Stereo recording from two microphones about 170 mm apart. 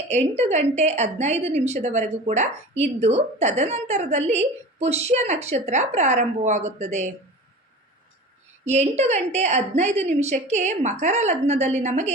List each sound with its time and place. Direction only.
0.1 s a woman's voice: 40° right (ahead or behind)
8.6 s a woman's voice: 40° right (ahead or behind)